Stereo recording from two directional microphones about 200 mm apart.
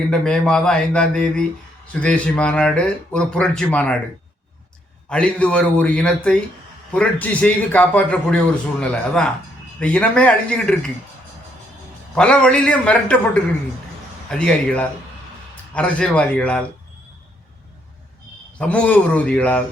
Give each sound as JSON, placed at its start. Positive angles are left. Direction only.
{"t": 0.1, "sound": "speech", "side_deg": 5}
{"t": 5.0, "sound": "a man's voice", "side_deg": 5}
{"t": 12.1, "sound": "speech", "side_deg": 5}
{"t": 18.6, "sound": "speech", "side_deg": 5}